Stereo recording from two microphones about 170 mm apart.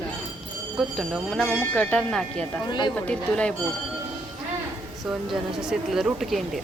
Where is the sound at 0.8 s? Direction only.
Centre (ahead or behind).